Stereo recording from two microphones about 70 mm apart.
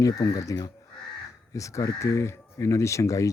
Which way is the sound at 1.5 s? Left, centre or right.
Left.